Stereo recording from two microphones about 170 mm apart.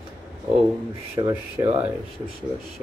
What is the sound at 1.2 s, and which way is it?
Speech, 25° right (ahead or behind).